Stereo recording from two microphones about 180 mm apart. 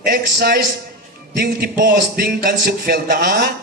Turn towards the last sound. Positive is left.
turn(degrees=-55)  # may be behind; listen again after turning